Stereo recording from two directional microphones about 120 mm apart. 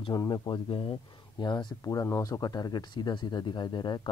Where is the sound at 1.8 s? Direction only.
25° left (ahead or behind).